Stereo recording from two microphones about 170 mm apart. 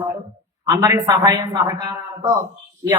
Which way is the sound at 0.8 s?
20° right (ahead or behind).